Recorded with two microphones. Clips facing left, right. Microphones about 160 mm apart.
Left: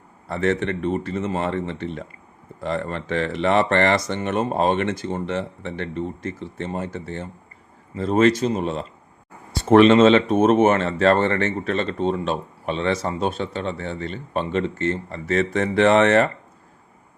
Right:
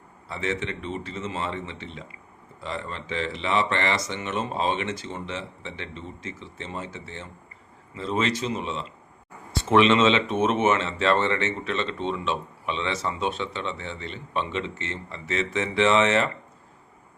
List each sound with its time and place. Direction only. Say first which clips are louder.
0.3 s speech: left 8 dB; 55° left (ahead or behind)